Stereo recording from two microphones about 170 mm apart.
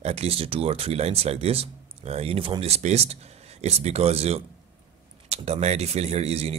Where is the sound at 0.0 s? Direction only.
40° right (ahead or behind).